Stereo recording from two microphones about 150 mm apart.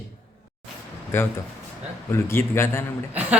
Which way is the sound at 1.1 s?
15° left (ahead or behind).